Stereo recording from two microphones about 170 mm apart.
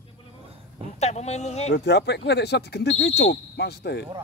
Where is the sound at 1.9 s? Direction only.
85° left.